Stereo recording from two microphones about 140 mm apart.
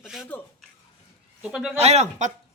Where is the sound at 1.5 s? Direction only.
Centre (ahead or behind).